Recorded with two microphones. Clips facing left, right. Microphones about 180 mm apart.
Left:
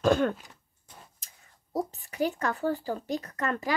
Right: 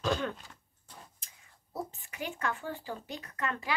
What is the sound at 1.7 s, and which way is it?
Speech, 40° left (ahead or behind).